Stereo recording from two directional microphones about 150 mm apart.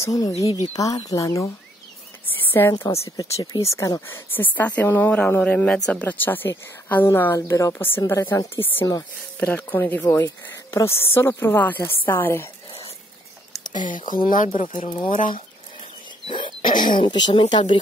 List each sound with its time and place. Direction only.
0.0 s speech: 25° left (ahead or behind)
0.4 s speech: 20° right (ahead or behind)
0.7 s speech: 25° left (ahead or behind)
2.8 s a woman's voice: 20° left (ahead or behind)
13.7 s speech: 60° left (ahead or behind)
14.5 s speech: 40° left (ahead or behind)
15.3 s bird: 35° left (ahead or behind)
16.6 s speech: 65° left (ahead or behind)
17.0 s speech: 35° left (ahead or behind)